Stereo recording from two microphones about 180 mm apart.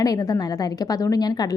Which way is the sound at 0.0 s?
20° left (ahead or behind).